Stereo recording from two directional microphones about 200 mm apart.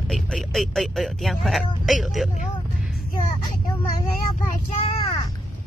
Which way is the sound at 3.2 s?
30° left (ahead or behind).